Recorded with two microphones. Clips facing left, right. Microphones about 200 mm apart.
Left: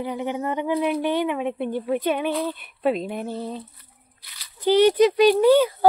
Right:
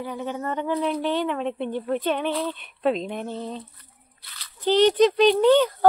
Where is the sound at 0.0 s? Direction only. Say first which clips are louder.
Left 3 dB; 15° left (ahead or behind).